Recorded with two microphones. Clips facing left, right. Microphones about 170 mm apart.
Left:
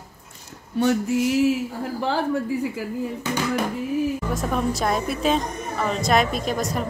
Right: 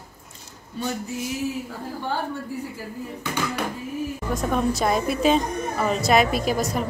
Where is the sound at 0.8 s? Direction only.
75° left (ahead or behind); by 2.2 s 90° left.